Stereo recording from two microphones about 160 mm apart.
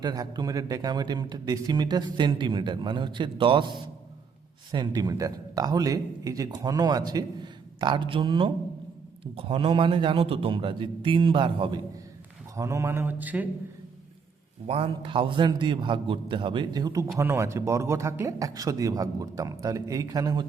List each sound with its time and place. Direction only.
0.0 s a man's voice: 25° right (ahead or behind)
12.5 s mantra: 20° right (ahead or behind)
14.7 s a man's voice: 35° right (ahead or behind)